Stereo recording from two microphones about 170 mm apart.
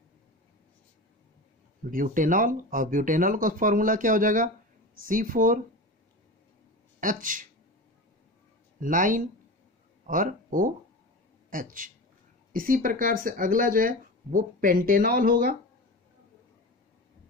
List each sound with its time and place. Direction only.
1.9 s speech: 55° right (ahead or behind)
7.0 s speech: 50° right (ahead or behind)
8.7 s speech: 50° right (ahead or behind)